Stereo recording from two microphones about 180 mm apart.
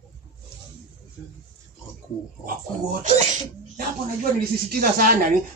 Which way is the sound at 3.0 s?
45° right (ahead or behind).